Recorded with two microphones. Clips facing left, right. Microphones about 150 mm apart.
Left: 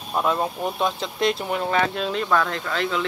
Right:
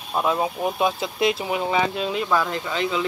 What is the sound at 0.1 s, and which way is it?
Speech, 5° right (ahead or behind).